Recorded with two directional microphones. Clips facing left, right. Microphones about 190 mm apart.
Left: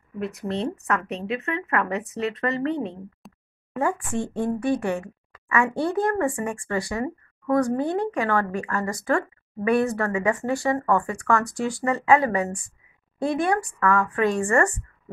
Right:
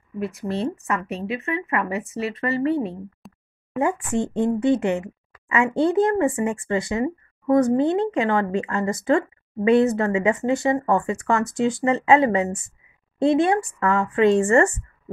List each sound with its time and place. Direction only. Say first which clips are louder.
0.2 s a woman's voice: right 2 dB; 5° right (ahead or behind)
3.7 s speech: right 3 dB; 20° right (ahead or behind)